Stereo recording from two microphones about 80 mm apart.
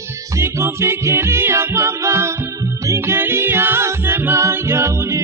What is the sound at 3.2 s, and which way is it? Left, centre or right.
Music, right.